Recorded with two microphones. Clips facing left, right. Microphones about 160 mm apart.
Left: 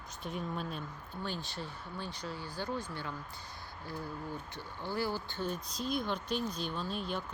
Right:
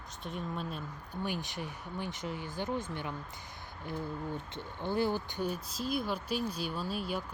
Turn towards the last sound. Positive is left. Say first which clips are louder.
# right 1 dB
turn(degrees=-5)  # may be behind; listen again after turning